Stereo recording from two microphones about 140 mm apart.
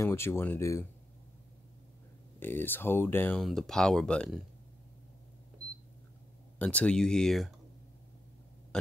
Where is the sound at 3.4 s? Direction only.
5° left (ahead or behind).